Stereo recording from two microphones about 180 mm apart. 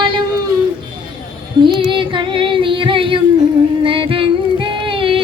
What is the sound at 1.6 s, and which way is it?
Female singing, 25° right (ahead or behind).